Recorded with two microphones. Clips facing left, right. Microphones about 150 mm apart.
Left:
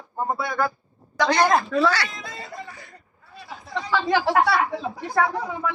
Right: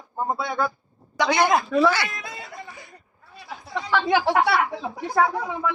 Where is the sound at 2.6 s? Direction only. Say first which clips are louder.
Left 1 dB; 15° right (ahead or behind).